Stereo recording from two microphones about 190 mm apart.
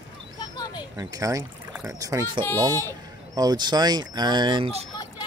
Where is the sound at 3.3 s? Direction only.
20° right (ahead or behind).